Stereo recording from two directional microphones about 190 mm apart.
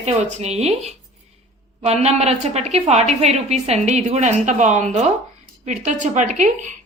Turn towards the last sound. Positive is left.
turn(degrees=-40)  # may be behind; listen again after turning